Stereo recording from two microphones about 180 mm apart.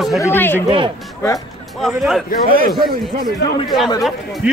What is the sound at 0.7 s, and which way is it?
Speech, 30° right (ahead or behind).